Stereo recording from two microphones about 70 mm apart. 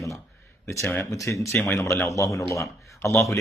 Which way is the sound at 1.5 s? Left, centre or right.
Left.